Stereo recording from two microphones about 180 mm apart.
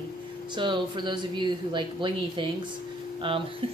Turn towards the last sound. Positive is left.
turn(degrees=-30)  # may be behind; listen again after turning